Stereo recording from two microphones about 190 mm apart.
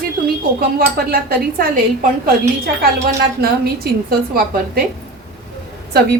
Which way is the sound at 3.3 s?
55° right (ahead or behind).